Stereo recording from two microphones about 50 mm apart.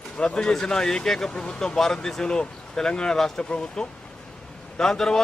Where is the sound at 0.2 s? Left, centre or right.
Centre.